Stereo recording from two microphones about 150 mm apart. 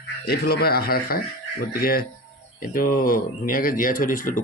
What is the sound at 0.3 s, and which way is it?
Speech, 90° left.